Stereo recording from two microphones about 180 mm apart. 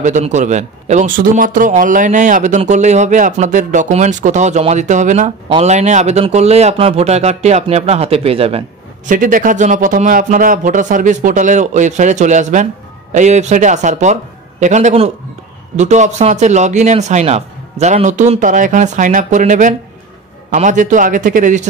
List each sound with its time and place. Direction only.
0.0 s a man's voice: 40° right (ahead or behind)
9.1 s a man's voice: 50° right (ahead or behind)